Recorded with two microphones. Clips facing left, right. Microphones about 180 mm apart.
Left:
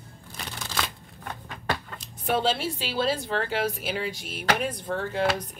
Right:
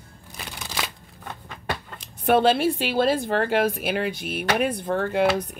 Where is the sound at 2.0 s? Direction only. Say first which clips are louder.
Right 8 dB; 60° right (ahead or behind).